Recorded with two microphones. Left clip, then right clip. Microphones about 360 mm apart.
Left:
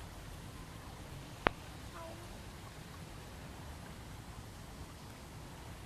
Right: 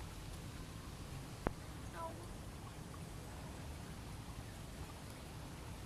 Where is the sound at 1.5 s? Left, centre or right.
Left.